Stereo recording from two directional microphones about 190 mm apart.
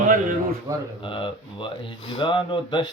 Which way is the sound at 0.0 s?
45° right (ahead or behind).